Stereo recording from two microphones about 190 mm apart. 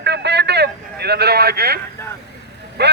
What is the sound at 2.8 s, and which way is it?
Speech, 60° right (ahead or behind).